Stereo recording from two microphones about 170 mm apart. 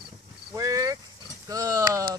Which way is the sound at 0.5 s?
20° right (ahead or behind).